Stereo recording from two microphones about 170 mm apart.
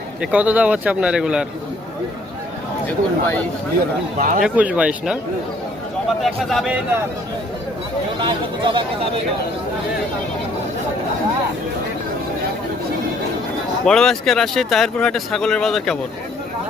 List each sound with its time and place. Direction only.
0.2 s a man's voice: 10° right (ahead or behind)
2.8 s speech: 10° left (ahead or behind)
4.2 s speech: 50° right (ahead or behind)
4.4 s a man's voice: 5° right (ahead or behind)
8.2 s speech: 30° right (ahead or behind)
13.8 s speech: 5° left (ahead or behind)